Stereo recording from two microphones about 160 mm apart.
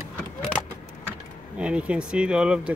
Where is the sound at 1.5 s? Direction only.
5° right (ahead or behind).